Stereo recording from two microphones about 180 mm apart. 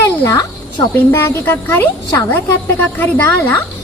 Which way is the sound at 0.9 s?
10° left (ahead or behind).